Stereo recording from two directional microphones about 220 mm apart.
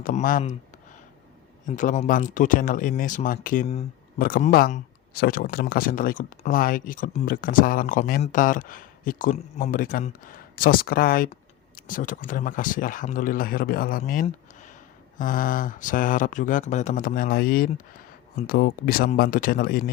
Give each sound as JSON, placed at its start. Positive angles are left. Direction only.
{"t": 0.0, "sound": "speech", "side_deg": 40}
{"t": 1.6, "sound": "speech", "side_deg": 35}